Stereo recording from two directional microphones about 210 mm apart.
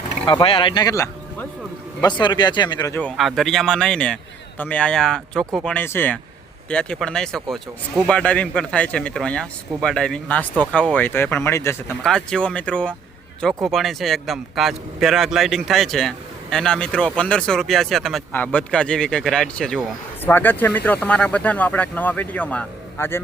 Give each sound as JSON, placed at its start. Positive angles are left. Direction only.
{"t": 0.3, "sound": "speech", "side_deg": 25}
{"t": 3.0, "sound": "a man's voice", "side_deg": 0}